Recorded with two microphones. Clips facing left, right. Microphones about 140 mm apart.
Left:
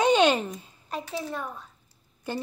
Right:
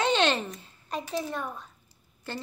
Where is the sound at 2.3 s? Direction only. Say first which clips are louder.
Left 5 dB; 15° left (ahead or behind).